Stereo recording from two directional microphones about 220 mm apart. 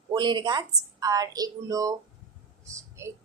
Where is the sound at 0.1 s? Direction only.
20° right (ahead or behind).